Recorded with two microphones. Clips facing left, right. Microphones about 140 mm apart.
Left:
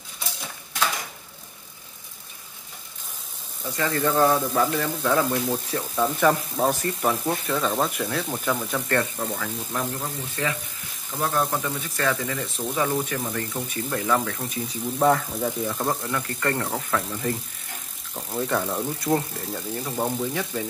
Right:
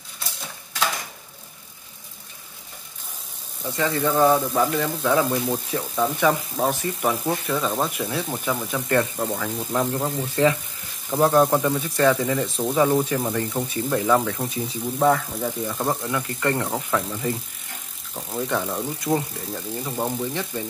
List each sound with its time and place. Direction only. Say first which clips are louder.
3.7 s speech: right 1 dB; 15° right (ahead or behind)
10.0 s speech: right 8 dB; 30° right (ahead or behind)
11.6 s speech: right 7 dB; 20° right (ahead or behind)
15.0 s speech: right 1 dB; centre (ahead or behind)